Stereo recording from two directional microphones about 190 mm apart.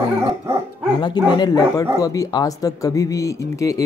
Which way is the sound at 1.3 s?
20° left (ahead or behind).